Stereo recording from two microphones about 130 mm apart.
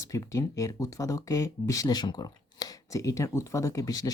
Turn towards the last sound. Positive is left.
turn(degrees=25)  # may be behind; listen again after turning